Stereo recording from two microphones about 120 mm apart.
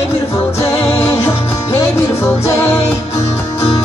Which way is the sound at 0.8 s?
20° left (ahead or behind).